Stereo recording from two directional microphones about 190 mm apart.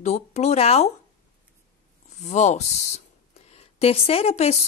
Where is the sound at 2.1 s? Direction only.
35° left (ahead or behind).